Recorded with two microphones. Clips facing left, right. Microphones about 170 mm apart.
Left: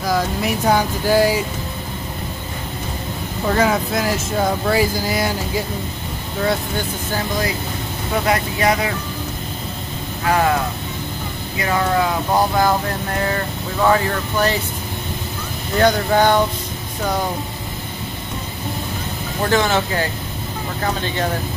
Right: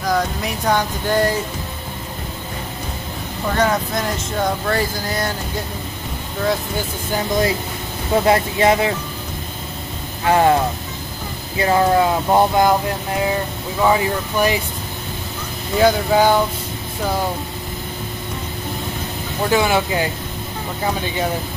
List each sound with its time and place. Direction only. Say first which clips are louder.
0.0 s speech: left 1 dB; 5° left (ahead or behind)
3.5 s speech: even; 5° left (ahead or behind)
8.3 s speech: right 3 dB; 25° right (ahead or behind)
10.2 s speech: right 3 dB; 30° right (ahead or behind)
15.7 s speech: right 1 dB; 5° right (ahead or behind)
19.5 s speech: right 1 dB; 10° right (ahead or behind)